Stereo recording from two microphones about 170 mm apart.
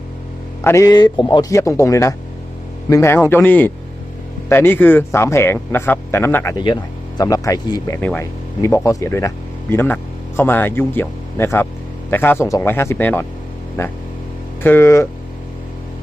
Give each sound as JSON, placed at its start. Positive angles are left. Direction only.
{"t": 0.6, "sound": "speech", "side_deg": 15}